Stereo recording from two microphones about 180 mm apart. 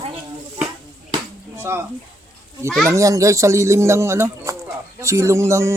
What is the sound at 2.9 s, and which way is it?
Speech, 15° right (ahead or behind).